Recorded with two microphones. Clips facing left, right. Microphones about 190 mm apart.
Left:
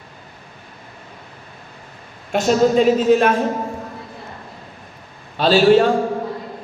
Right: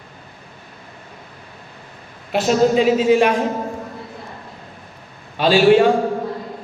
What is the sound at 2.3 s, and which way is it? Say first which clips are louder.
A woman's voice: even; 5° right (ahead or behind).